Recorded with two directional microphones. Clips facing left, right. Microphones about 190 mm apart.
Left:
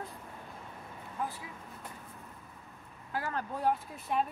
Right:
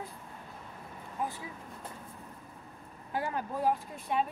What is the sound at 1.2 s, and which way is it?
Vehicle, 15° right (ahead or behind).